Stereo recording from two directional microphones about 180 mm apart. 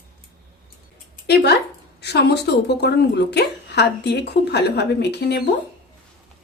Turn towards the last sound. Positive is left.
turn(degrees=65)  # may be behind; listen again after turning